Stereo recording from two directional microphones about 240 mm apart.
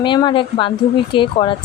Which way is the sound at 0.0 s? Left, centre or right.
Centre.